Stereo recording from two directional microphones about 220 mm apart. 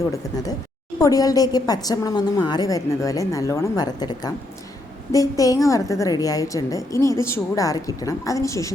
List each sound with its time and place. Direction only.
0.1 s a woman's voice: 15° left (ahead or behind)